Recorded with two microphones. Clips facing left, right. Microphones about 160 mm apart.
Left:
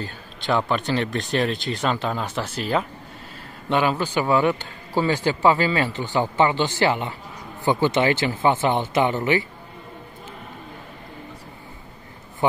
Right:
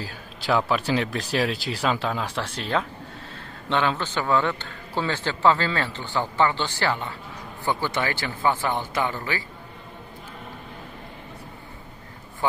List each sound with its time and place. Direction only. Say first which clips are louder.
0.0 s a man's voice: left 2 dB; 5° right (ahead or behind); by 9.5 s 20° left (ahead or behind)